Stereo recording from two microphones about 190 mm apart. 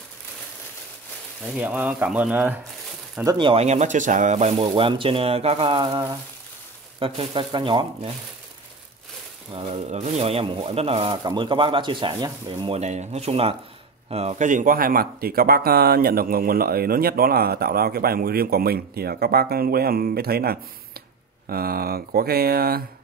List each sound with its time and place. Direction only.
1.6 s speech: 10° right (ahead or behind)
3.3 s speech: 25° right (ahead or behind)
9.5 s speech: 35° right (ahead or behind); by 22.8 s 55° right (ahead or behind)